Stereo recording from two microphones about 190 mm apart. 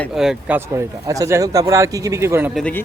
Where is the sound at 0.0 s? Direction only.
Centre (ahead or behind).